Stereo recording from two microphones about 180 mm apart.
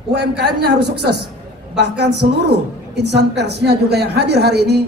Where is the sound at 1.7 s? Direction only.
70° right (ahead or behind).